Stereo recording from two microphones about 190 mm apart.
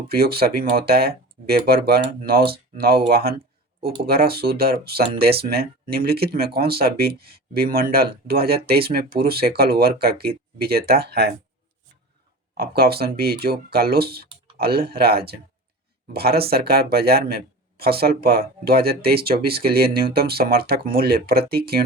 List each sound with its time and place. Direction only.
0.1 s speech: 55° right (ahead or behind)
12.5 s speech: 55° right (ahead or behind)